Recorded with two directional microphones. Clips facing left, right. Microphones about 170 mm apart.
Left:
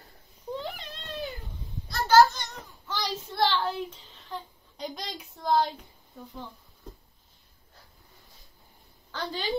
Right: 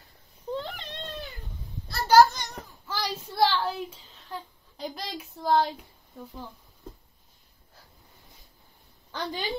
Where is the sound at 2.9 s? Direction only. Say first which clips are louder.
Even; 5° right (ahead or behind).